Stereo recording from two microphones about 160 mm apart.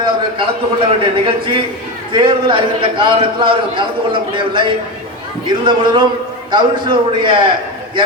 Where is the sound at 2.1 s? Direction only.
30° right (ahead or behind).